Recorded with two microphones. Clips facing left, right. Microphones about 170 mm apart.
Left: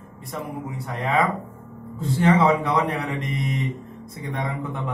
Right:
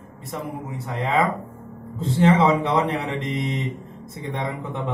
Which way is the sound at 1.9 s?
25° right (ahead or behind).